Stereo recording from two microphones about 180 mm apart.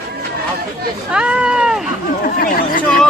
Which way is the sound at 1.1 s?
5° right (ahead or behind).